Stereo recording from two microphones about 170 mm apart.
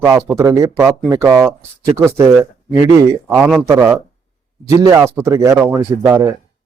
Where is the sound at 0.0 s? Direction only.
20° right (ahead or behind).